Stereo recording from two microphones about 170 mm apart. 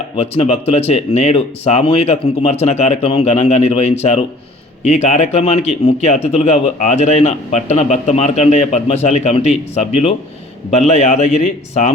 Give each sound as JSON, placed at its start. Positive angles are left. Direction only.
{"t": 0.2, "sound": "a man's voice", "side_deg": 40}